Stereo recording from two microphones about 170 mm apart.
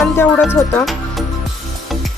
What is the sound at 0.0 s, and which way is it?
Speech, 10° left (ahead or behind).